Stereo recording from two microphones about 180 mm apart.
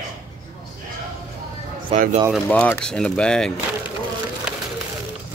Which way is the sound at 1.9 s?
35° right (ahead or behind).